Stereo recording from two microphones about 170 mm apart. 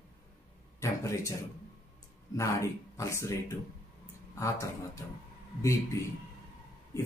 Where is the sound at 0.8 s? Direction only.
20° left (ahead or behind).